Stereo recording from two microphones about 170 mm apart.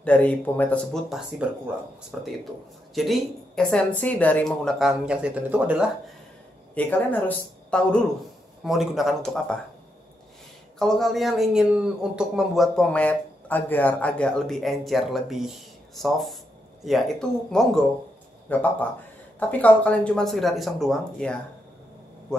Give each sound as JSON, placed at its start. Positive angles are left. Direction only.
{"t": 0.0, "sound": "speech", "side_deg": 10}
{"t": 2.1, "sound": "a man's voice", "side_deg": 0}
{"t": 6.7, "sound": "a man's voice", "side_deg": 10}
{"t": 10.8, "sound": "a man's voice", "side_deg": 0}